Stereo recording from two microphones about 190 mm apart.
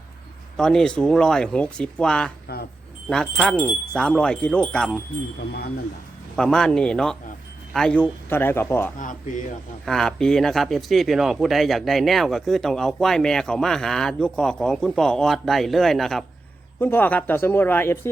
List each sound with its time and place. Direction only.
0.5 s speech: 5° left (ahead or behind)
6.3 s speech: 5° left (ahead or behind)
9.0 s speech: 40° left (ahead or behind)
9.8 s speech: 5° left (ahead or behind)